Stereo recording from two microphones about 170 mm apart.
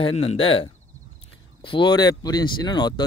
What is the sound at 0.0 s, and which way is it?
Speech, 35° left (ahead or behind).